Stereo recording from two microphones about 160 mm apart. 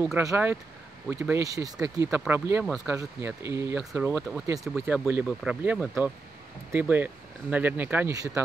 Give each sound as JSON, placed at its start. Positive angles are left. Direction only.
{"t": 0.2, "sound": "speech", "side_deg": -15}
{"t": 2.6, "sound": "speech", "side_deg": 0}
{"t": 2.9, "sound": "speech", "side_deg": -15}